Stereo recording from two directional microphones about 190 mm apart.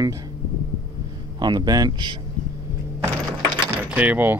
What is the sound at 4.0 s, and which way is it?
Speech, 10° right (ahead or behind).